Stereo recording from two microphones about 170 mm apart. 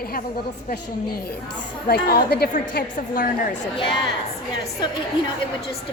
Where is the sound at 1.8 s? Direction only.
65° left (ahead or behind).